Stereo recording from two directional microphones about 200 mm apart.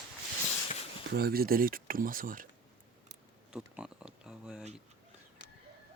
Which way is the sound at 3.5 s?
5° right (ahead or behind).